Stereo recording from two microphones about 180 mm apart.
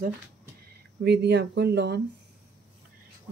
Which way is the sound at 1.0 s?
70° right (ahead or behind).